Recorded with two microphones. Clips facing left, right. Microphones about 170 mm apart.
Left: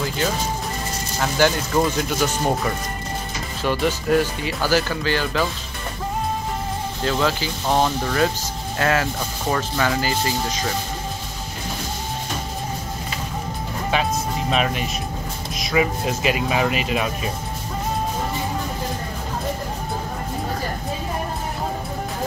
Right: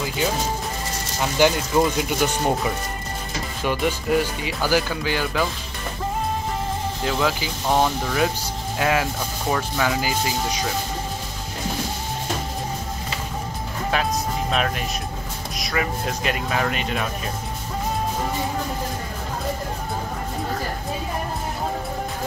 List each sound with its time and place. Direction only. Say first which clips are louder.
1.4 s speech: right 1 dB; 15° right (ahead or behind)
3.6 s speech: left 2 dB; 10° right (ahead or behind)
7.1 s speech: left 2 dB; 10° right (ahead or behind)
13.9 s speech: left 1 dB; centre (ahead or behind)